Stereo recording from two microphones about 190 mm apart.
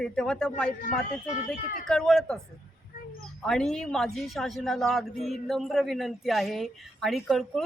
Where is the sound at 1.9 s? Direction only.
5° left (ahead or behind).